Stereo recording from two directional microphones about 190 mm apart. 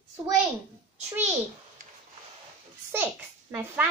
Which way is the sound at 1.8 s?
45° right (ahead or behind).